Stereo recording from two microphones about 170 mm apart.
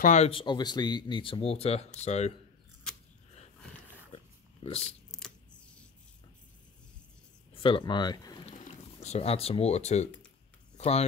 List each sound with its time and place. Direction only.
0.0 s speech: 45° left (ahead or behind)
0.3 s speech: 30° left (ahead or behind)
4.8 s shuffling cards: 5° left (ahead or behind)
7.5 s speech: 30° left (ahead or behind)
8.5 s speech: 45° left (ahead or behind)